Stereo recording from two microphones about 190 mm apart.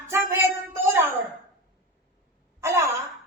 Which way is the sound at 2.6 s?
15° right (ahead or behind).